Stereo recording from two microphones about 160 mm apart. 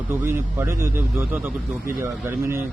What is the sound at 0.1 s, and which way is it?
Speech, 15° right (ahead or behind).